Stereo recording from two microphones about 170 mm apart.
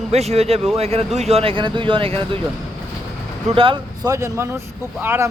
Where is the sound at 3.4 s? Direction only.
30° right (ahead or behind).